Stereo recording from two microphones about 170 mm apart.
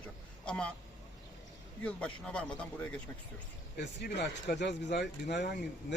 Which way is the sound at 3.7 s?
85° left.